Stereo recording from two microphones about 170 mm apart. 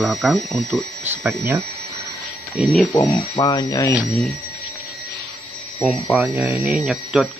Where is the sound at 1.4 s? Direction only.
15° right (ahead or behind).